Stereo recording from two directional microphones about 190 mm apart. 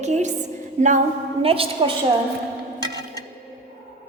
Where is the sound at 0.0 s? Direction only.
35° right (ahead or behind).